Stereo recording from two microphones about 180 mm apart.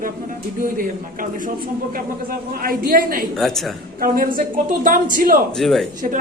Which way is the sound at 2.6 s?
50° right (ahead or behind).